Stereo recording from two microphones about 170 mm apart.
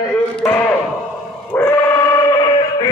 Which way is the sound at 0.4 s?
10° left (ahead or behind).